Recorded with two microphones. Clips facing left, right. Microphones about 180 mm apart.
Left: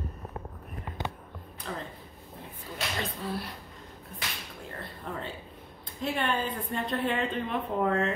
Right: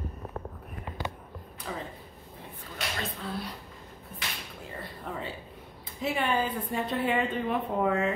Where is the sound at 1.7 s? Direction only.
5° right (ahead or behind).